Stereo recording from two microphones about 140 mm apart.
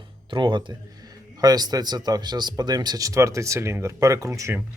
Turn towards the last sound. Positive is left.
turn(degrees=-20)  # may be behind; listen again after turning